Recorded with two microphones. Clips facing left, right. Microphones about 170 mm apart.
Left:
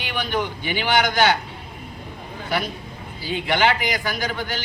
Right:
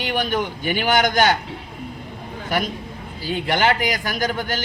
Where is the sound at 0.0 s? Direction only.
45° right (ahead or behind).